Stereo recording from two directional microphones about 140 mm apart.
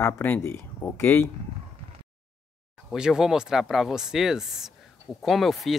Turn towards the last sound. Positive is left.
turn(degrees=0)  # may be behind; listen again after turning